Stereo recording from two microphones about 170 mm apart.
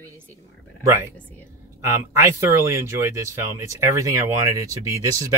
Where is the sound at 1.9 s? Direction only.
15° right (ahead or behind).